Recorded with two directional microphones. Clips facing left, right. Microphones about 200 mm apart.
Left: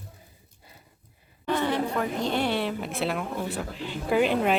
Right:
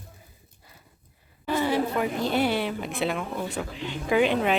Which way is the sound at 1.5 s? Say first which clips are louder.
Right 1 dB; 5° right (ahead or behind).